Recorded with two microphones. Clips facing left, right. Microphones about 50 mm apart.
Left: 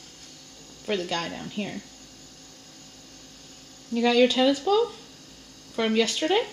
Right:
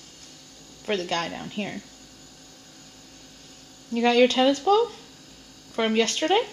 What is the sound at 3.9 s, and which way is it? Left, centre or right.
A woman's voice, centre.